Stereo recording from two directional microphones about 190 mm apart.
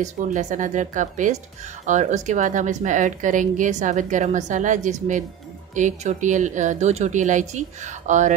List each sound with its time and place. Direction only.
0.0 s a woman's voice: 40° right (ahead or behind)